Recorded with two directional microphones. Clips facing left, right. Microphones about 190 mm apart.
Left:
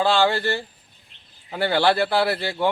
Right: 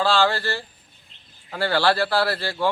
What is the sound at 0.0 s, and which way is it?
Speech, 20° left (ahead or behind).